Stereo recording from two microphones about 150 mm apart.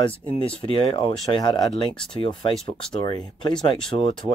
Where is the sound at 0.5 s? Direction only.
35° left (ahead or behind).